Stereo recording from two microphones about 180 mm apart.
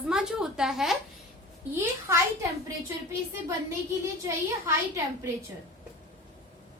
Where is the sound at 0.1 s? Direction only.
5° right (ahead or behind).